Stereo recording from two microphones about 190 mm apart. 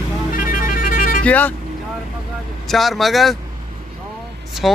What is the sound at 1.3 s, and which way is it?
Speech, 10° left (ahead or behind).